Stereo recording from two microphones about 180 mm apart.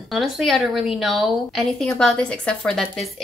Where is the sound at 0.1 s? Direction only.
Centre (ahead or behind).